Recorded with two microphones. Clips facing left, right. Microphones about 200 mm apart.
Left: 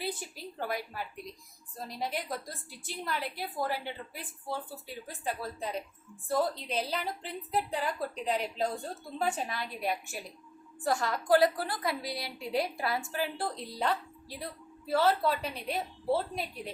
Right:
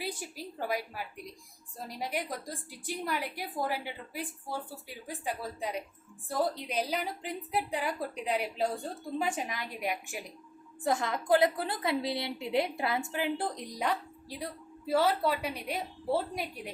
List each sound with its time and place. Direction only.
0.7 s a woman's voice: 10° right (ahead or behind)